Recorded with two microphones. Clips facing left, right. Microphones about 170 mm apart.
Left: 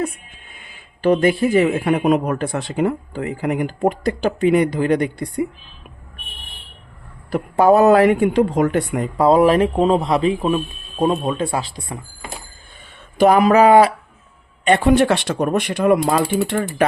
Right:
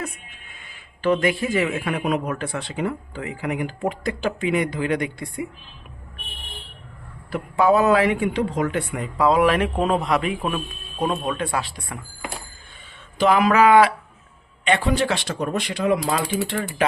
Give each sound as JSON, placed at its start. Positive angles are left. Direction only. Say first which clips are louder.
{"t": 1.0, "sound": "speech", "louder": "left 5 dB", "side_deg": 35}
{"t": 7.3, "sound": "speech", "louder": "left 5 dB", "side_deg": 40}
{"t": 13.1, "sound": "speech", "louder": "left 5 dB", "side_deg": 45}
{"t": 14.6, "sound": "speech", "louder": "left 7 dB", "side_deg": 50}